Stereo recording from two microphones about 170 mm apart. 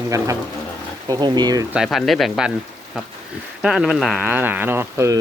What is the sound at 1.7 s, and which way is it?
Speech, centre (ahead or behind).